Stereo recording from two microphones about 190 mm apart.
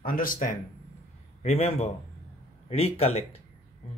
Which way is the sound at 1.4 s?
35° left (ahead or behind).